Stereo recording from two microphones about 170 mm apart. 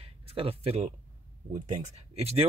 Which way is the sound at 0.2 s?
35° right (ahead or behind).